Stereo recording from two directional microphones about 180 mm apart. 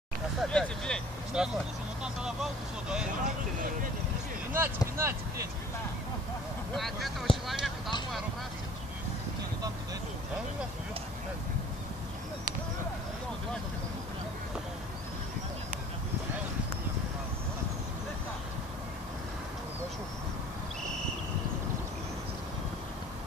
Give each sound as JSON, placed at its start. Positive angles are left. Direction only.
{"t": 0.4, "sound": "vehicle", "side_deg": 5}
{"t": 2.2, "sound": "speech", "side_deg": -5}
{"t": 3.3, "sound": "vehicle", "side_deg": -50}
{"t": 4.6, "sound": "speech", "side_deg": -15}
{"t": 6.7, "sound": "speech", "side_deg": 0}
{"t": 7.4, "sound": "a sound", "side_deg": 0}